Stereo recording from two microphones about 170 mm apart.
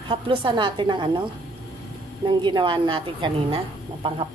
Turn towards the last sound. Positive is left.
turn(degrees=-30)  # may be behind; listen again after turning